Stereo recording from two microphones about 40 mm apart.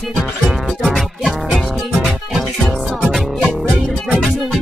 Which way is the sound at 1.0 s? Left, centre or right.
Centre.